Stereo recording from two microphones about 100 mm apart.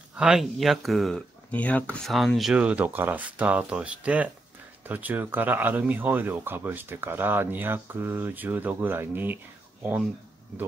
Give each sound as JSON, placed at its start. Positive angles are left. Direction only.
{"t": 0.1, "sound": "speech", "side_deg": -10}
{"t": 1.5, "sound": "speech", "side_deg": 15}
{"t": 2.0, "sound": "speech", "side_deg": 0}
{"t": 2.5, "sound": "speech", "side_deg": -15}